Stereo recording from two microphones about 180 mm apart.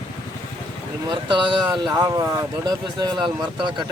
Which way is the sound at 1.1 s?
25° right (ahead or behind).